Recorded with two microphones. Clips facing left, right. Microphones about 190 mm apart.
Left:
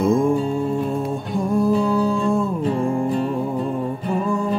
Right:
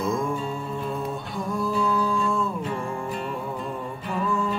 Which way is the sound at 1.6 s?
45° left (ahead or behind).